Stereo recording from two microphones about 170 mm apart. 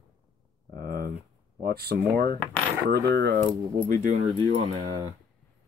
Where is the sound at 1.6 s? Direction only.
65° right (ahead or behind).